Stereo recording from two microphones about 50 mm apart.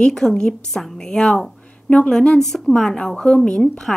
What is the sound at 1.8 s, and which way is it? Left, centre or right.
A woman's voice, left.